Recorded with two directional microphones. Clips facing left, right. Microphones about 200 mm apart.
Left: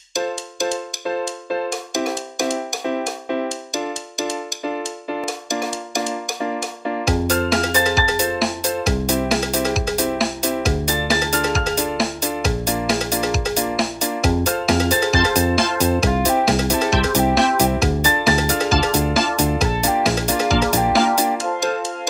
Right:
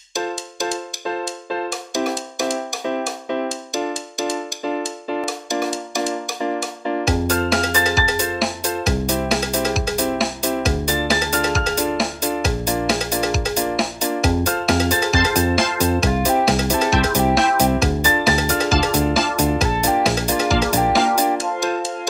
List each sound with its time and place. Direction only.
7.1 s music: centre (ahead or behind)